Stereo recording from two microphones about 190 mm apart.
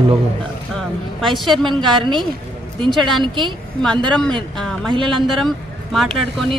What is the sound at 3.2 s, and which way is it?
Speech, 25° right (ahead or behind).